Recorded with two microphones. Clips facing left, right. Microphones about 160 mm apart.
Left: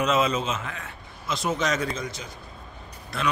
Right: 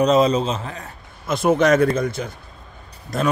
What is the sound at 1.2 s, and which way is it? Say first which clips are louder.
Speech: right 10 dB; 55° right (ahead or behind).